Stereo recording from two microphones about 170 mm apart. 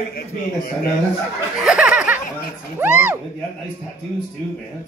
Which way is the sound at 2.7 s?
10° right (ahead or behind).